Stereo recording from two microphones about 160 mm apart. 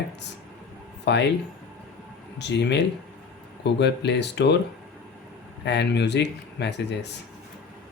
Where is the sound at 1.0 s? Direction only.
90° left.